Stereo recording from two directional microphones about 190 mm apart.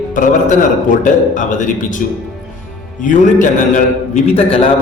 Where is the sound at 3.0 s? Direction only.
45° left (ahead or behind).